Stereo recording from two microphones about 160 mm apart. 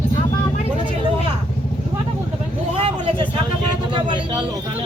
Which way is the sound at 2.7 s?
35° right (ahead or behind).